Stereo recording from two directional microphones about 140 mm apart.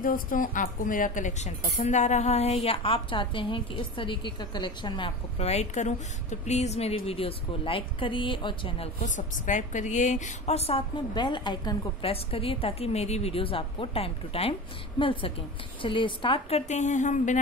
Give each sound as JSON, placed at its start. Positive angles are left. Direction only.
{"t": 0.0, "sound": "a woman's voice", "side_deg": 80}
{"t": 9.0, "sound": "a woman's voice", "side_deg": 60}